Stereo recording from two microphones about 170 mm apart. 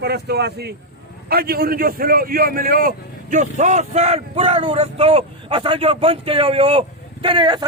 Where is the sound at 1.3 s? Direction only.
60° right (ahead or behind).